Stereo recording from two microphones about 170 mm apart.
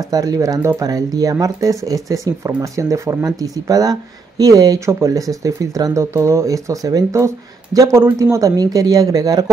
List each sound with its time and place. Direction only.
0.1 s speech: 20° right (ahead or behind)